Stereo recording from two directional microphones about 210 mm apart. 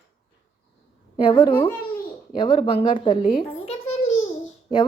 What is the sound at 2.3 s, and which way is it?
A child's voice, 25° left (ahead or behind).